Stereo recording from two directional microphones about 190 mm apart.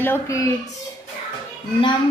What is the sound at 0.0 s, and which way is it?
Speech, 15° left (ahead or behind).